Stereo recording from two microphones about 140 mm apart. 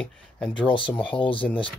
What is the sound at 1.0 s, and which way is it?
Speech, 35° left (ahead or behind).